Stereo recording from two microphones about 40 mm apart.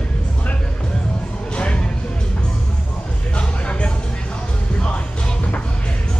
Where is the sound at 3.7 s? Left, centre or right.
Left.